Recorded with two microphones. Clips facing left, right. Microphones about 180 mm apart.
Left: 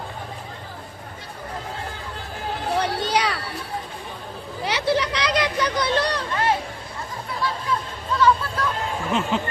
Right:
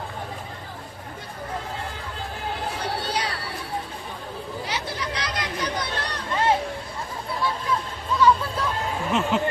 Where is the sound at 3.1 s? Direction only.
80° left.